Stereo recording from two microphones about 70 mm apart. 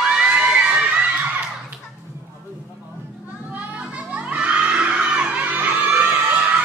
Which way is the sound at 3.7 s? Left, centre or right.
Centre.